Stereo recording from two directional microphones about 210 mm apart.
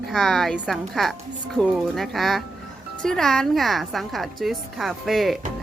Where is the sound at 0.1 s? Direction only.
Centre (ahead or behind).